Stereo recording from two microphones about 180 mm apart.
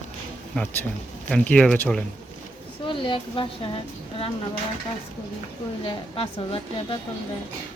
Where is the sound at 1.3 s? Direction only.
10° left (ahead or behind).